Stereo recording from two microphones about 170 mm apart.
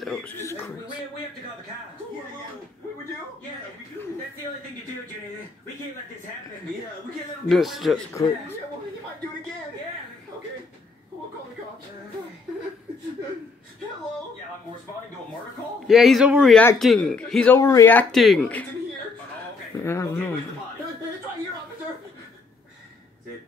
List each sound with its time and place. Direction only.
0.0 s chuckle: 5° left (ahead or behind)
0.4 s chuckle: 15° left (ahead or behind)
7.4 s speech: centre (ahead or behind)
15.9 s speech: centre (ahead or behind)
16.5 s speech: 5° left (ahead or behind)
17.6 s speech: 15° left (ahead or behind)
19.8 s speech: 15° left (ahead or behind)